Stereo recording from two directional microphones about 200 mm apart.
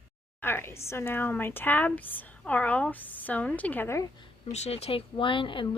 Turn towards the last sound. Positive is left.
turn(degrees=25)  # may be behind; listen again after turning